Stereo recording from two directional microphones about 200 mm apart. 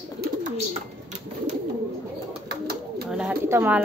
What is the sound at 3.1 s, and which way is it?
Bird, 5° right (ahead or behind).